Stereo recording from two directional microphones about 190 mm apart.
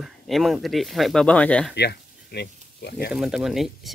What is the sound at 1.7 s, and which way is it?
Speech, 60° left (ahead or behind).